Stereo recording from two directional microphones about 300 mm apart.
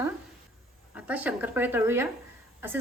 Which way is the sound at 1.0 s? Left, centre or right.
Centre.